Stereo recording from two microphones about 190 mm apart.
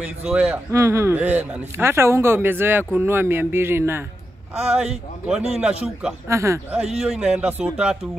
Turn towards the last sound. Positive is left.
turn(degrees=-5)  # may be behind; listen again after turning